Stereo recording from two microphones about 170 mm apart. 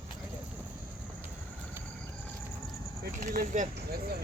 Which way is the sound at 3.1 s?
50° right (ahead or behind).